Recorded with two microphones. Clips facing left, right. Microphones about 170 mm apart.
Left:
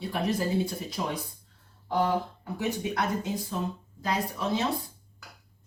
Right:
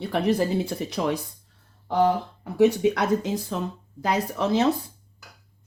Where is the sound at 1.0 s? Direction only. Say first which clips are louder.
Right 7 dB; 90° right.